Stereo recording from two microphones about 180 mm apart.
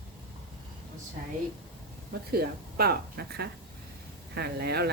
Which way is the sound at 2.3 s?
60° right (ahead or behind).